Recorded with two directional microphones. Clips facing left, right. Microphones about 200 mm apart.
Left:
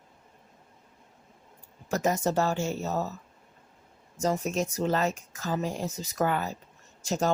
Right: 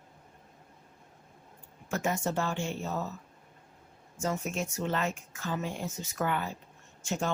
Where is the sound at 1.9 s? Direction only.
40° left (ahead or behind).